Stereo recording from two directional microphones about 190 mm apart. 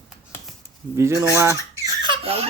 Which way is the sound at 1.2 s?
15° right (ahead or behind).